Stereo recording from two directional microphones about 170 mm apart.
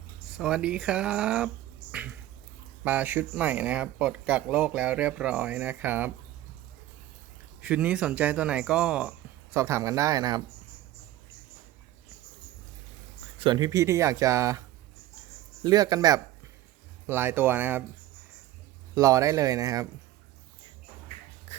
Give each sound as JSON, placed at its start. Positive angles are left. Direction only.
{"t": 0.3, "sound": "speech", "side_deg": -5}
{"t": 1.9, "sound": "a sound", "side_deg": -10}
{"t": 2.8, "sound": "speech", "side_deg": -10}
{"t": 7.6, "sound": "speech", "side_deg": -5}
{"t": 13.4, "sound": "speech", "side_deg": -25}
{"t": 15.6, "sound": "speech", "side_deg": -25}
{"t": 18.9, "sound": "speech", "side_deg": -20}